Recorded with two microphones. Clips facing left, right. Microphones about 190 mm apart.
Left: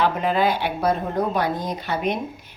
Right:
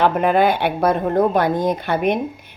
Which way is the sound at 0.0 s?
55° right (ahead or behind).